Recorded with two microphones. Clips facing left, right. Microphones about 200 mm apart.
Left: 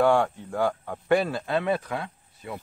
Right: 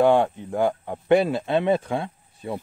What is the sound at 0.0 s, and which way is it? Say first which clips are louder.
Speech: right 3 dB; 20° right (ahead or behind).